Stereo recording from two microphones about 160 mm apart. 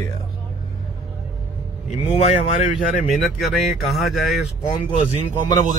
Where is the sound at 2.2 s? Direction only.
45° left (ahead or behind).